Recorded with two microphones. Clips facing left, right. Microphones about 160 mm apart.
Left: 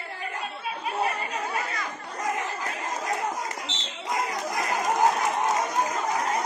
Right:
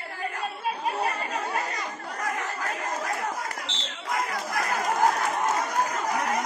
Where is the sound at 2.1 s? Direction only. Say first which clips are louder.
Left 2 dB; 20° left (ahead or behind).